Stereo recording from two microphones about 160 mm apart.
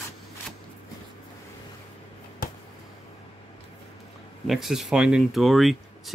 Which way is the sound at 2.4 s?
65° left (ahead or behind).